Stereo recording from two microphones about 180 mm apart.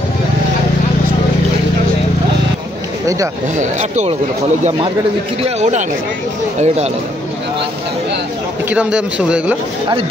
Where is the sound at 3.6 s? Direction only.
40° right (ahead or behind).